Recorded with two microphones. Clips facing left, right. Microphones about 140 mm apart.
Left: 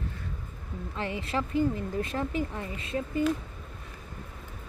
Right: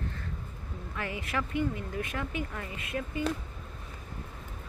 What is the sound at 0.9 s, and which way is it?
Speech, 30° left (ahead or behind).